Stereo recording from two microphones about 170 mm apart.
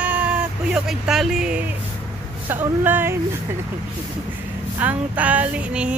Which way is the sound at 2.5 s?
10° right (ahead or behind).